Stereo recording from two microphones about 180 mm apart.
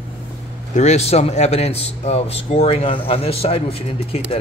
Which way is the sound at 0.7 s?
40° left (ahead or behind).